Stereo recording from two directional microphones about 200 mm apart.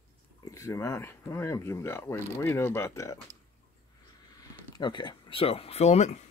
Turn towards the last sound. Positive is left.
turn(degrees=35)  # may be behind; listen again after turning